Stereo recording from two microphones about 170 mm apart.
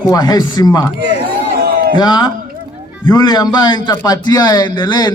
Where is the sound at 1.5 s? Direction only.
60° right (ahead or behind).